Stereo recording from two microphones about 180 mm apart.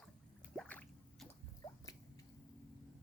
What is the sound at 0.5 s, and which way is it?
Drip, 5° left (ahead or behind).